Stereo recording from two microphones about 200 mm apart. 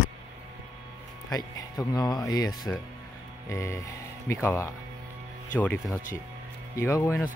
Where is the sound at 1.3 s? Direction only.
20° left (ahead or behind).